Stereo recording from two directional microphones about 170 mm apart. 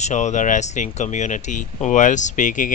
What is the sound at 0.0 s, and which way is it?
Speech, 45° left (ahead or behind).